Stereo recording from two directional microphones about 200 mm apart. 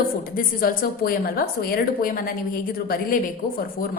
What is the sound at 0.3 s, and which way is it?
A woman's voice, 45° left (ahead or behind).